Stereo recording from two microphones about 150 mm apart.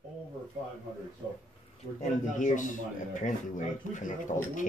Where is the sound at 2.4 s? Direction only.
55° left (ahead or behind).